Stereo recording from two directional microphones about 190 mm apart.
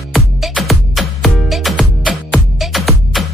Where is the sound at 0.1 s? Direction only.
Centre (ahead or behind).